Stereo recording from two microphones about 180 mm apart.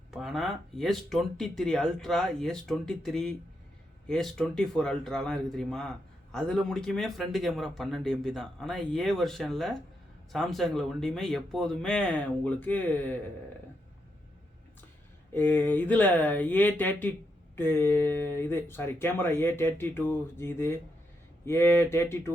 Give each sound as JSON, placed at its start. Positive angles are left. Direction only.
{"t": 0.1, "sound": "speech", "side_deg": 0}
{"t": 15.3, "sound": "speech", "side_deg": 10}